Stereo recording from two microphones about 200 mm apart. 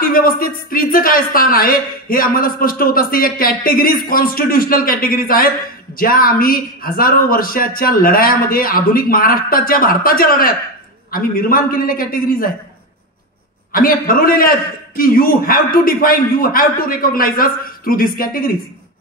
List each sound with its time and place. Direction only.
0.0 s speech: 45° left (ahead or behind)
13.7 s speech: 45° left (ahead or behind)